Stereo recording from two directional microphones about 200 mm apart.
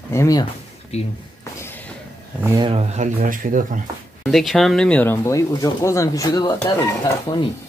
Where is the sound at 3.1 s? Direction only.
40° right (ahead or behind).